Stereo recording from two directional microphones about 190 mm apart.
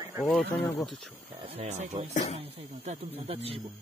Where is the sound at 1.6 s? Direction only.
40° right (ahead or behind).